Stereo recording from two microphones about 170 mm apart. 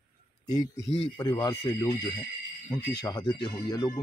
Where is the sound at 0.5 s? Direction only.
20° left (ahead or behind).